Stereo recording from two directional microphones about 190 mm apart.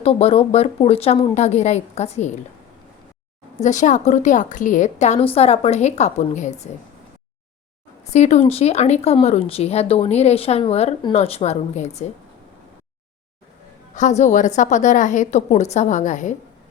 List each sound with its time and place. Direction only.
0.0 s a woman's voice: 30° left (ahead or behind)
3.6 s a woman's voice: 40° left (ahead or behind)
8.1 s a woman's voice: 35° left (ahead or behind)
13.9 s a woman's voice: 40° left (ahead or behind)